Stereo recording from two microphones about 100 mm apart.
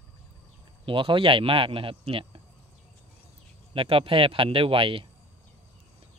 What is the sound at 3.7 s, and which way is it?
Speech, 65° right (ahead or behind).